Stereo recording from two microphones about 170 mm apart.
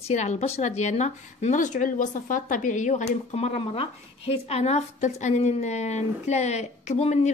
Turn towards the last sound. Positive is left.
turn(degrees=40)  # may be behind; listen again after turning